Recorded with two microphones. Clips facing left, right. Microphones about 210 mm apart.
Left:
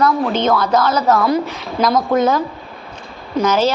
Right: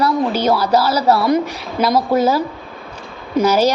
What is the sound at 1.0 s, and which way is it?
A woman's voice, 10° right (ahead or behind).